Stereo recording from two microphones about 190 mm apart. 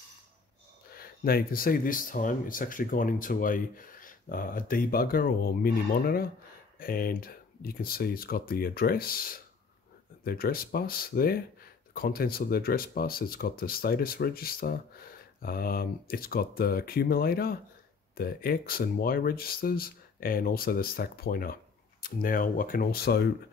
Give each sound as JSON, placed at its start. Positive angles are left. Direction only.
{"t": 0.9, "sound": "speech", "side_deg": 50}